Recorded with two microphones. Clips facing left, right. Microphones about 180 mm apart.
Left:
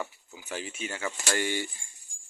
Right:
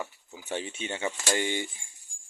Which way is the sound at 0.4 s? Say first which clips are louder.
Right 3 dB; 30° right (ahead or behind).